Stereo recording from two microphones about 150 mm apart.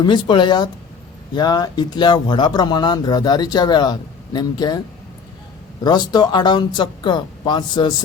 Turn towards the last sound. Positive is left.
turn(degrees=30)  # may be behind; listen again after turning